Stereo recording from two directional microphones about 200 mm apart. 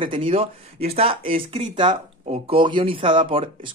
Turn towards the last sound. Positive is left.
turn(degrees=-25)  # may be behind; listen again after turning